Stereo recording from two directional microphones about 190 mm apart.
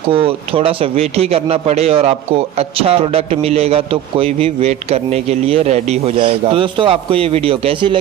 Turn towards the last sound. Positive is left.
turn(degrees=-25)  # may be behind; listen again after turning